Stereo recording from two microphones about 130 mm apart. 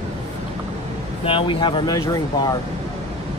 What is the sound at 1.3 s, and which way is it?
Speech, 40° left (ahead or behind).